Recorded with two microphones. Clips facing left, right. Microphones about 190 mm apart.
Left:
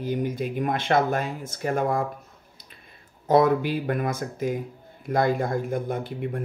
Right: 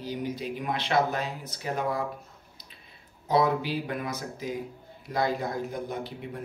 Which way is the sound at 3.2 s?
50° left (ahead or behind).